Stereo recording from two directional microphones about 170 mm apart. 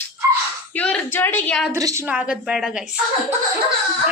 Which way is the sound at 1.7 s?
20° right (ahead or behind).